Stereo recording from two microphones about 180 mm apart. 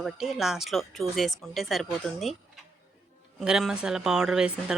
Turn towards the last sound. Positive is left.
turn(degrees=-5)  # may be behind; listen again after turning